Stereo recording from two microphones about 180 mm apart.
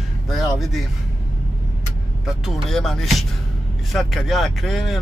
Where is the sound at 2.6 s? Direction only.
Centre (ahead or behind).